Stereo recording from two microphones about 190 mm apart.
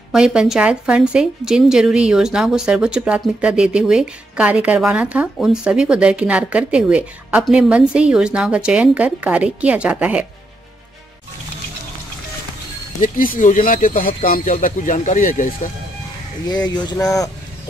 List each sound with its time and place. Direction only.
0.1 s a woman's voice: 5° right (ahead or behind)
13.0 s speech: 45° left (ahead or behind)
16.4 s speech: 20° left (ahead or behind)